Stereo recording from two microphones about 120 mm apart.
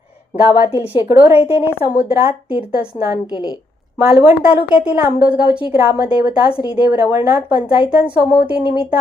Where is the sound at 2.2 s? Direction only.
50° left (ahead or behind).